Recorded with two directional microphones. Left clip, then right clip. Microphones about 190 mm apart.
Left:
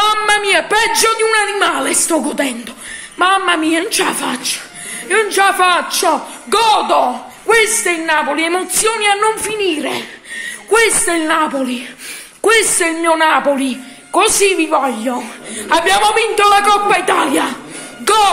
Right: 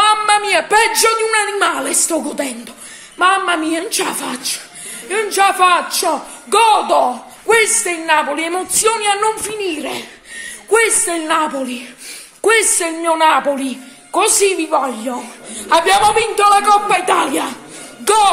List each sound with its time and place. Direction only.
0.0 s a man's voice: 10° right (ahead or behind)
6.9 s speech: 25° right (ahead or behind)
7.4 s a woman's voice: 10° right (ahead or behind)